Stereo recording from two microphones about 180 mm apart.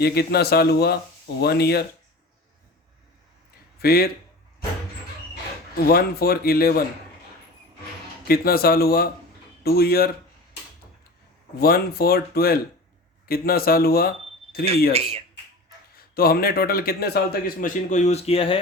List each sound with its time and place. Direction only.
0.0 s a man's voice: 65° left (ahead or behind)
3.8 s speech: 60° left (ahead or behind)
5.7 s a man's voice: 60° left (ahead or behind)
8.3 s a man's voice: 55° left (ahead or behind)
11.6 s a man's voice: 55° left (ahead or behind)
16.1 s a man's voice: 55° left (ahead or behind); by 18.6 s 30° left (ahead or behind)